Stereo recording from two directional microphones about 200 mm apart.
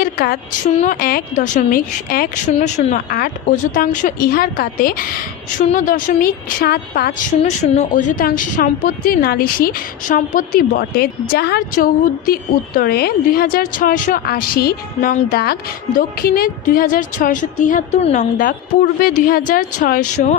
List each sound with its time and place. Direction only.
0.0 s a sound: 45° left (ahead or behind)
0.8 s a woman's voice: 45° left (ahead or behind)
2.5 s a woman's voice: 35° left (ahead or behind)
7.6 s a woman's voice: 35° left (ahead or behind)